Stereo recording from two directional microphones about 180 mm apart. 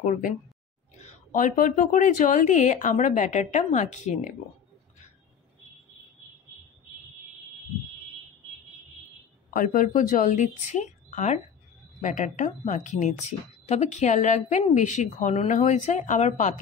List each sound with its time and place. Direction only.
0.0 s a woman's voice: 45° left (ahead or behind)
9.5 s a woman's voice: 50° left (ahead or behind)